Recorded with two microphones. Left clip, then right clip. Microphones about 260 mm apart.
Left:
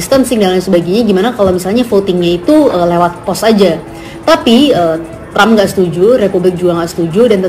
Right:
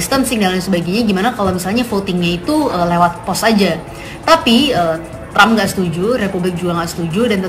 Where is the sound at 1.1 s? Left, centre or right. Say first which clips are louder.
Left 5 dB; centre.